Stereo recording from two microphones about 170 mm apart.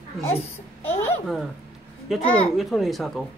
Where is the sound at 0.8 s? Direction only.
10° left (ahead or behind).